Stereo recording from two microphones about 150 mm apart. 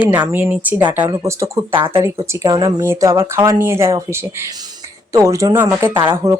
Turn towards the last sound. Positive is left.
turn(degrees=-20)  # may be behind; listen again after turning